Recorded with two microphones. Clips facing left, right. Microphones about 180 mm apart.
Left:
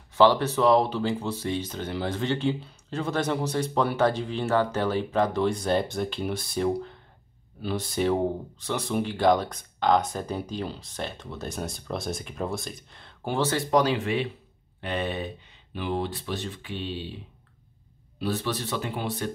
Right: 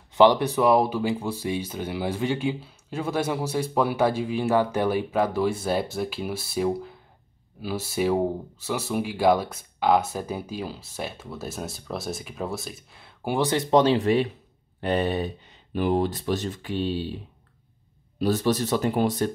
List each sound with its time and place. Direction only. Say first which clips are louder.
0.1 s speech: right 2 dB; 15° right (ahead or behind)
13.9 s speech: right 6 dB; 40° right (ahead or behind)
18.2 s speech: right 6 dB; 40° right (ahead or behind)